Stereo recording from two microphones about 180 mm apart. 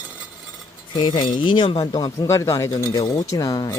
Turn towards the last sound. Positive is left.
turn(degrees=20)  # may be behind; listen again after turning